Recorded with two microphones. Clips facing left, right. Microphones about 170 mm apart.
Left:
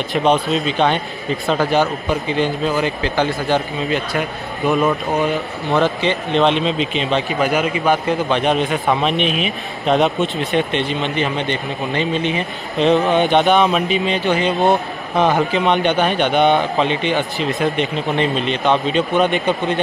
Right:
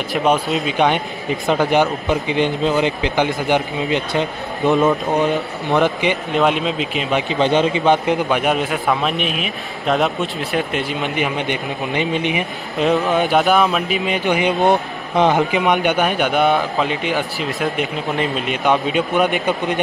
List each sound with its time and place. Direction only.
0.1 s a man's voice: 5° right (ahead or behind)
7.2 s a man's voice: 25° right (ahead or behind)
8.3 s a man's voice: 10° right (ahead or behind)